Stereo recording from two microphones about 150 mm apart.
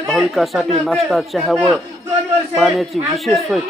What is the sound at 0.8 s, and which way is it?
Speech, centre (ahead or behind).